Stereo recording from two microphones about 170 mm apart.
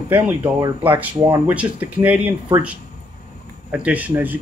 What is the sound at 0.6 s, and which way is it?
Speech, 20° right (ahead or behind).